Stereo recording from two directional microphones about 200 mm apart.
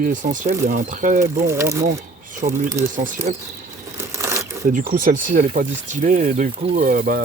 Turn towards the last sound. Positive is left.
turn(degrees=-45)  # may be behind; listen again after turning